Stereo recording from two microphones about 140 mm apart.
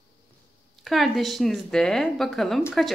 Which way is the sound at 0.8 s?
Centre (ahead or behind).